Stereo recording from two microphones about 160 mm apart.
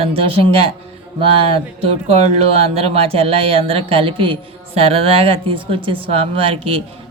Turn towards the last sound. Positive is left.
turn(degrees=-35)  # may be behind; listen again after turning